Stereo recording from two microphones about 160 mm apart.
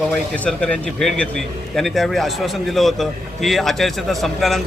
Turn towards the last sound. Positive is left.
turn(degrees=0)  # may be behind; listen again after turning